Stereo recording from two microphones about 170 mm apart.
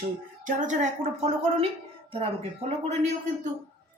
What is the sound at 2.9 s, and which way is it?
Speech, 45° right (ahead or behind).